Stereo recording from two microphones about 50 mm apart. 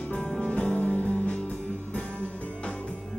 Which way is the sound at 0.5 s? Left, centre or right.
Left.